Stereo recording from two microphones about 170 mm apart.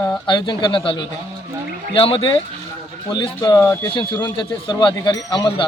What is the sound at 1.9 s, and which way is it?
Speech, 30° left (ahead or behind).